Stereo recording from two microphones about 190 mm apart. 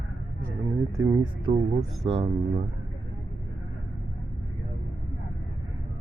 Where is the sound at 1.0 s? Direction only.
25° right (ahead or behind).